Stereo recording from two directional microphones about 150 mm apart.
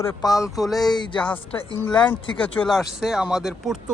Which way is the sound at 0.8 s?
30° left (ahead or behind).